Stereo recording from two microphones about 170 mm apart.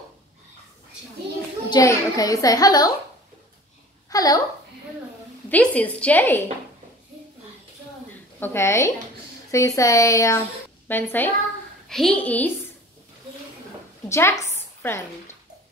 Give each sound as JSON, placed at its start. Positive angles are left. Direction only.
{"t": 1.7, "sound": "a child's voice", "side_deg": 20}
{"t": 4.1, "sound": "a woman's voice", "side_deg": 20}
{"t": 5.5, "sound": "a woman's voice", "side_deg": 10}
{"t": 8.4, "sound": "a woman's voice", "side_deg": 15}
{"t": 14.0, "sound": "a woman's voice", "side_deg": 15}
{"t": 14.5, "sound": "a sound", "side_deg": 15}